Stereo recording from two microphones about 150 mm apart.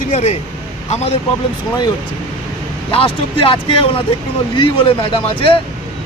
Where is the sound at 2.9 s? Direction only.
35° left (ahead or behind).